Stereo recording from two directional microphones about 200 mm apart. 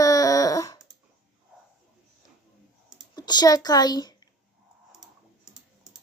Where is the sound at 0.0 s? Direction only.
15° left (ahead or behind).